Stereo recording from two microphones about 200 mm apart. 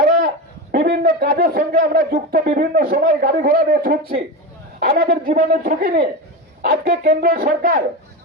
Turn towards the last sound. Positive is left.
turn(degrees=-40)  # may be behind; listen again after turning